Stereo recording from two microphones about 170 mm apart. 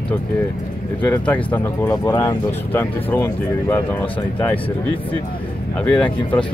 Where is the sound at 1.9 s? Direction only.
25° left (ahead or behind).